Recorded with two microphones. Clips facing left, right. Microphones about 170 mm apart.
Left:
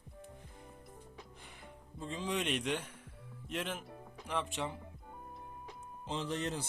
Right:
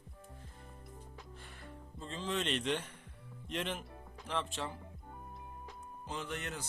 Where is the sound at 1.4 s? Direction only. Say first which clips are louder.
Right 2 dB; 15° left (ahead or behind).